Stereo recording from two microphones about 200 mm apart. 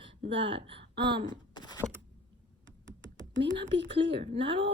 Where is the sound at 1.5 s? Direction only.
20° left (ahead or behind).